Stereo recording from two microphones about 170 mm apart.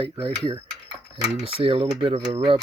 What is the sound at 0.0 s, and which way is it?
Speech, 30° right (ahead or behind).